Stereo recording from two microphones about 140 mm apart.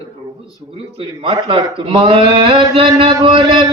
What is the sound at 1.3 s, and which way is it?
A man's voice, 40° right (ahead or behind).